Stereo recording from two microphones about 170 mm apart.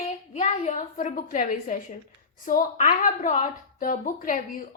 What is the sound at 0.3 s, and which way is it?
A woman's voice, 45° left (ahead or behind).